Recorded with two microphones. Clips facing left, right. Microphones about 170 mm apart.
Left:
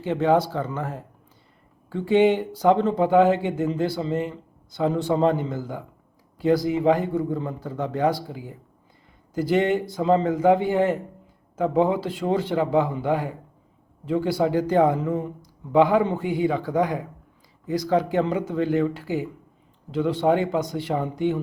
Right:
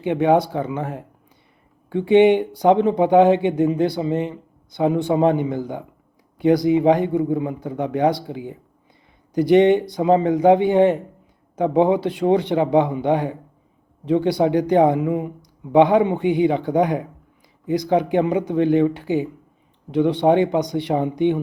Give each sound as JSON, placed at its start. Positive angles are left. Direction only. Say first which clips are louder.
{"t": 0.0, "sound": "speech", "louder": "right 3 dB", "side_deg": -15}